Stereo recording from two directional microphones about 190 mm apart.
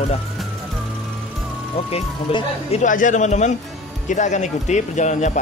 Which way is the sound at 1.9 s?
35° left (ahead or behind).